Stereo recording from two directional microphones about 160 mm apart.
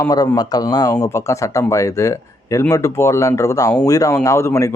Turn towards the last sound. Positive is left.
turn(degrees=20)  # may be behind; listen again after turning